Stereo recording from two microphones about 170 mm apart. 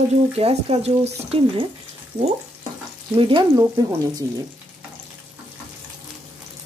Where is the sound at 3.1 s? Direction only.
30° right (ahead or behind).